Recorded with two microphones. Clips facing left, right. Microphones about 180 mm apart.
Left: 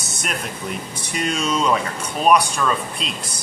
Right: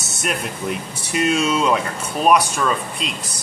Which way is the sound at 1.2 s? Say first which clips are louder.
Right 3 dB; 5° right (ahead or behind).